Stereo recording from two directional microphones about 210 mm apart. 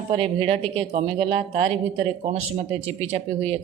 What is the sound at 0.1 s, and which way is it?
Speech, 30° right (ahead or behind).